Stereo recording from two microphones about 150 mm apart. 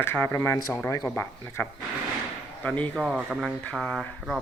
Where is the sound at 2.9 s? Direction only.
Centre (ahead or behind).